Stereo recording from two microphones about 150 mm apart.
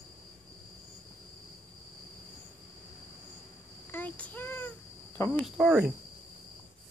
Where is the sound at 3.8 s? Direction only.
10° left (ahead or behind).